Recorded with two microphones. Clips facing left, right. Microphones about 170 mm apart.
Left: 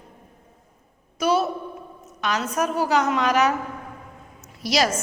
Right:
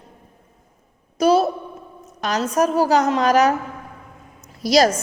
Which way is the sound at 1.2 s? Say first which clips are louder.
Right 5 dB; 35° right (ahead or behind).